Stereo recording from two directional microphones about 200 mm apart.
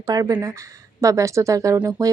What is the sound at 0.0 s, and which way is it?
Speech, 15° right (ahead or behind).